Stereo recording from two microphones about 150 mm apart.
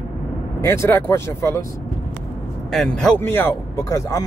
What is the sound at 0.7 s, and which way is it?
Speech, 15° left (ahead or behind).